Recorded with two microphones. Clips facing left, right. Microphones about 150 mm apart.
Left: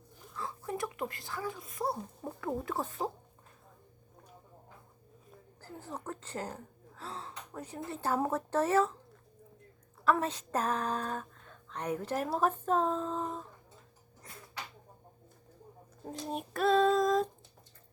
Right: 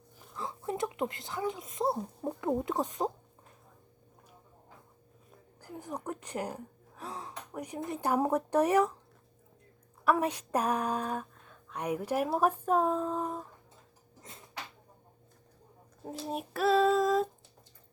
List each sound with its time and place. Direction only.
0.3 s speech: 20° right (ahead or behind)
5.5 s speech: 15° right (ahead or behind)
10.0 s speech: 15° right (ahead or behind)
14.2 s a sound: 20° right (ahead or behind)
16.0 s child singing: 5° right (ahead or behind)